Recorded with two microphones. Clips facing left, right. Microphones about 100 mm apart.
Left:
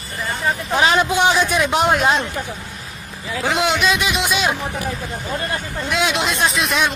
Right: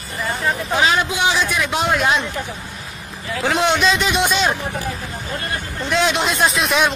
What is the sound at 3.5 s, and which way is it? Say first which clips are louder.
Speech: right 1 dB; 15° left (ahead or behind).